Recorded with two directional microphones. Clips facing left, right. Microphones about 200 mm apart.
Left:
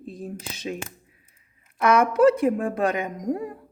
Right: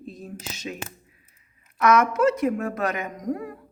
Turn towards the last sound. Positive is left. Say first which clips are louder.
# left 2 dB
turn(degrees=30)  # may be behind; listen again after turning